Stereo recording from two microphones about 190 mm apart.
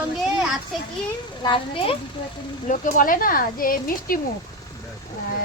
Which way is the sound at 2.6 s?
45° left (ahead or behind).